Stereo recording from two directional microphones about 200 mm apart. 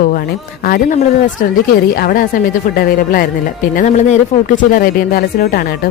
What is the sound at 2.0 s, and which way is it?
Speech, 45° left (ahead or behind).